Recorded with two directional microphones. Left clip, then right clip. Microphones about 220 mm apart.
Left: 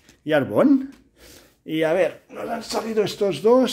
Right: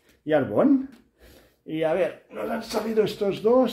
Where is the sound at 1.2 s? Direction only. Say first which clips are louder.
Left 4 dB; 50° left (ahead or behind).